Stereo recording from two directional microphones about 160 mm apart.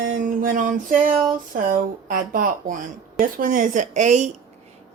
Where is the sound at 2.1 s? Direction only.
60° right (ahead or behind).